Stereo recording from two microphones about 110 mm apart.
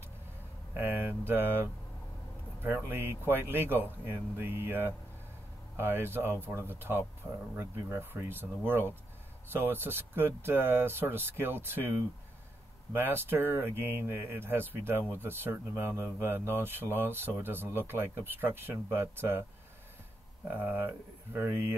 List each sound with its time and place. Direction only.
0.7 s speech: 20° right (ahead or behind)
12.9 s speech: 20° right (ahead or behind)
20.4 s speech: 15° right (ahead or behind)